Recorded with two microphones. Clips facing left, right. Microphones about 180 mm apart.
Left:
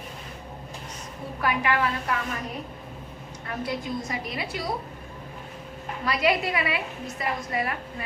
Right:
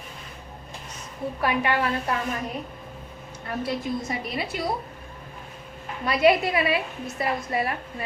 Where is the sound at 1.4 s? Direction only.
30° right (ahead or behind).